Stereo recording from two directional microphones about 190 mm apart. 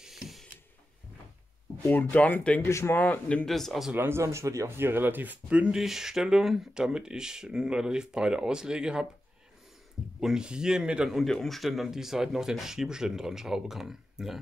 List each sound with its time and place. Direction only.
0.0 s a sound: centre (ahead or behind)
1.8 s a man's voice: 10° left (ahead or behind)
3.9 s speech: 10° right (ahead or behind)
10.2 s speech: 5° right (ahead or behind)